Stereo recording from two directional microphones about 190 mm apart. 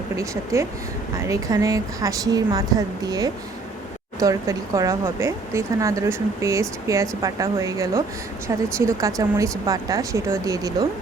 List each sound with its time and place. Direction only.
0.2 s a woman's voice: 15° right (ahead or behind)